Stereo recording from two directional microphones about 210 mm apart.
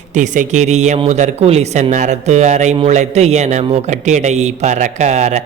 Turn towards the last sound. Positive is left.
turn(degrees=-35)  # may be behind; listen again after turning